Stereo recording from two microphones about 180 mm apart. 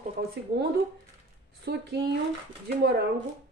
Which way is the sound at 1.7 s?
65° right (ahead or behind).